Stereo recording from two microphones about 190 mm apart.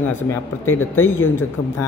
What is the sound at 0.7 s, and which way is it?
Speech, 90° left.